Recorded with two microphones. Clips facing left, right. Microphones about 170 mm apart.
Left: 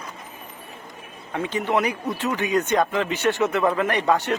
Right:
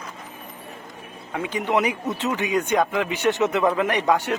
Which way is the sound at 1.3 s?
10° right (ahead or behind).